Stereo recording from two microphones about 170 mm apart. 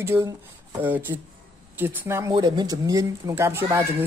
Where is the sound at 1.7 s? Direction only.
15° right (ahead or behind).